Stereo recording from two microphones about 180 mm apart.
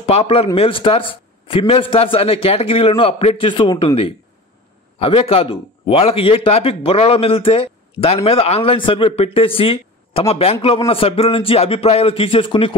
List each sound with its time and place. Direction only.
0.0 s a man's voice: 35° left (ahead or behind)